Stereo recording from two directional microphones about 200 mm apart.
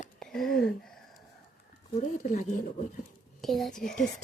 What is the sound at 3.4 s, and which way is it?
Speech, centre (ahead or behind).